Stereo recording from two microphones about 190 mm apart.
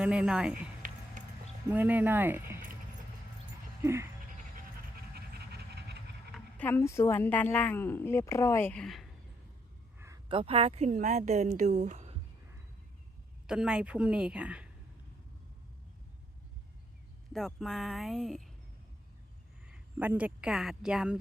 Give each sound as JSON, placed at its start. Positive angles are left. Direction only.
{"t": 0.0, "sound": "speech", "side_deg": -5}
{"t": 1.7, "sound": "speech", "side_deg": -10}
{"t": 3.8, "sound": "speech", "side_deg": -15}
{"t": 5.1, "sound": "pant", "side_deg": -55}
{"t": 6.3, "sound": "a woman's voice", "side_deg": 10}
{"t": 10.2, "sound": "speech", "side_deg": -30}
{"t": 13.5, "sound": "speech", "side_deg": -5}
{"t": 17.3, "sound": "speech", "side_deg": 0}
{"t": 19.6, "sound": "speech", "side_deg": -5}